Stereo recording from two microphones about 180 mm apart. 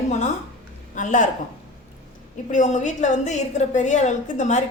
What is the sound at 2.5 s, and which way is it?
A woman's voice, 45° left (ahead or behind).